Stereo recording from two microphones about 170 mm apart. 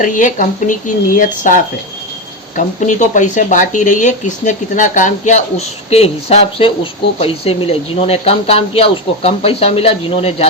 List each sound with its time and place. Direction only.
0.0 s speech: 50° left (ahead or behind)